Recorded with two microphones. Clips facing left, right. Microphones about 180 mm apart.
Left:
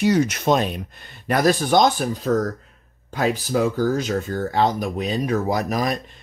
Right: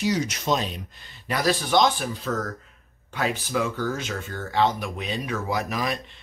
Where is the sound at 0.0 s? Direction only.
55° left (ahead or behind).